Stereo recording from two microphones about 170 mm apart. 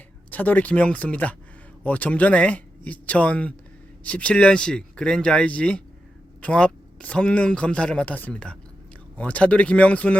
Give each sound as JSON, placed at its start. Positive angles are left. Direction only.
{"t": 0.3, "sound": "speech", "side_deg": 10}